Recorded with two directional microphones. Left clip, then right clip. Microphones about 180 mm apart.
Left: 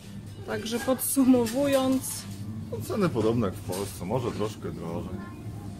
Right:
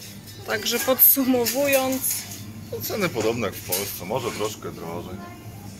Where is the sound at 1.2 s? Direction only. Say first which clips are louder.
Right 2 dB; 20° left (ahead or behind).